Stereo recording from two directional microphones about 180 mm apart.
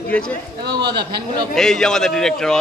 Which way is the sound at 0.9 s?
65° right (ahead or behind).